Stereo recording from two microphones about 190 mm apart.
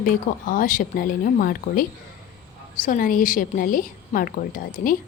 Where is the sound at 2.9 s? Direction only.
45° left (ahead or behind).